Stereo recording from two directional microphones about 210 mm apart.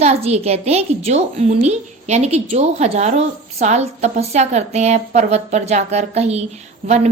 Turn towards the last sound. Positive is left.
turn(degrees=-30)  # may be behind; listen again after turning